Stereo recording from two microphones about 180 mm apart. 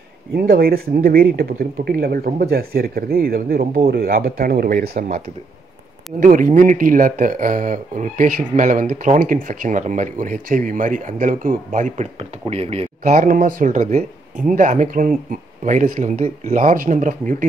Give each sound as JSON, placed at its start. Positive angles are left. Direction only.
{"t": 0.3, "sound": "speech", "side_deg": -60}
{"t": 6.1, "sound": "speech", "side_deg": -50}
{"t": 12.2, "sound": "speech", "side_deg": -35}